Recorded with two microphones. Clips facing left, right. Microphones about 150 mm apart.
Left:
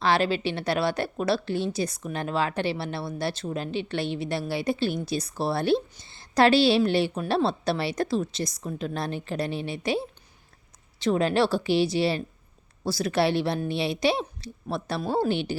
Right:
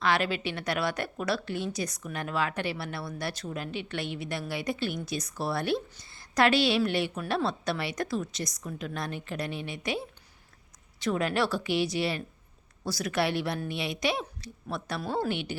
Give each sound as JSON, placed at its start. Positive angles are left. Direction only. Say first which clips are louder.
{"t": 0.0, "sound": "a woman's voice", "louder": "left 4 dB", "side_deg": 30}